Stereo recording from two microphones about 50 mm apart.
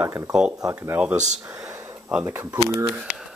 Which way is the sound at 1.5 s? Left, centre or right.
Right.